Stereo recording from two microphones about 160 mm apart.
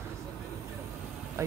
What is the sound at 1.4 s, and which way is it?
Speech, 20° right (ahead or behind).